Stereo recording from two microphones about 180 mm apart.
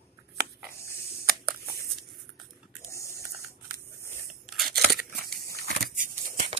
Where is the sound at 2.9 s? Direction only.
15° left (ahead or behind).